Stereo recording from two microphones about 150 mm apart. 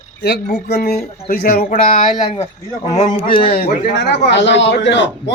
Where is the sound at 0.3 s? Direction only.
90° left.